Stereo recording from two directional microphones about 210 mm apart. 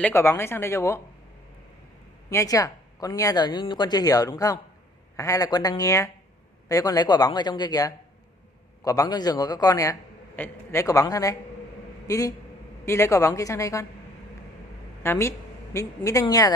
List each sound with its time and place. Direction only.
0.0 s a man's voice: 10° left (ahead or behind)
2.2 s a man's voice: 15° left (ahead or behind)
15.0 s a man's voice: 15° left (ahead or behind)